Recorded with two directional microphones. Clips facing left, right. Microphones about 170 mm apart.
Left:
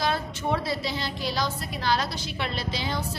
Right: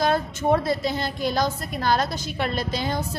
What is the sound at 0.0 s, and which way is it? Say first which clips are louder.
A woman's voice: right 5 dB; 50° right (ahead or behind).